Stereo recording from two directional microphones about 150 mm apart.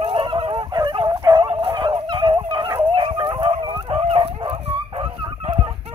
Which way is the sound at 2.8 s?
30° right (ahead or behind).